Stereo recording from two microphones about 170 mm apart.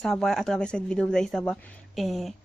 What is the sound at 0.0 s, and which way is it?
A woman's voice, 5° left (ahead or behind).